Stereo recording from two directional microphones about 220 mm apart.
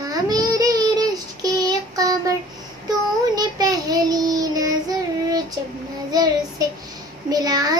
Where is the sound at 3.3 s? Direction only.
15° right (ahead or behind).